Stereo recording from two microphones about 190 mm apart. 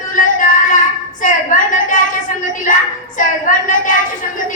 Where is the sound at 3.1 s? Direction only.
45° left (ahead or behind).